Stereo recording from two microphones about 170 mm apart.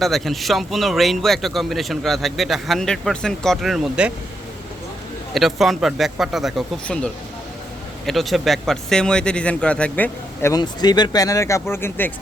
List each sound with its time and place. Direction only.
0.0 s a man's voice: centre (ahead or behind)
5.3 s a man's voice: centre (ahead or behind)
10.5 s speech: 25° left (ahead or behind)